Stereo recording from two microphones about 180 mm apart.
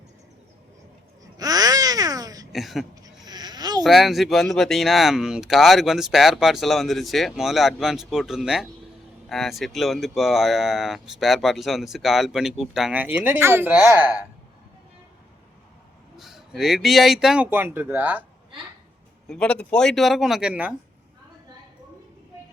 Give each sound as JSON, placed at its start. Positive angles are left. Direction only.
{"t": 1.4, "sound": "babbling", "side_deg": -20}
{"t": 2.5, "sound": "speech", "side_deg": 0}
{"t": 3.0, "sound": "a sound", "side_deg": -20}
{"t": 3.8, "sound": "speech", "side_deg": 0}
{"t": 16.1, "sound": "speech", "side_deg": 0}
{"t": 19.3, "sound": "speech", "side_deg": 5}